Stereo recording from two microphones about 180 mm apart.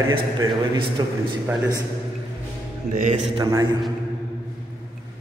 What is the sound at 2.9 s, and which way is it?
Speech, 45° right (ahead or behind).